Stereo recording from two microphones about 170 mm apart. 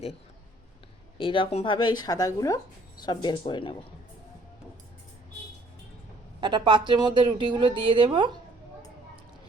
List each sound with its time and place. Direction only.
1.2 s speech: 30° left (ahead or behind)
6.4 s speech: 25° right (ahead or behind)